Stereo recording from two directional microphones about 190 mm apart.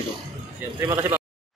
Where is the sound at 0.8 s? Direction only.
15° right (ahead or behind).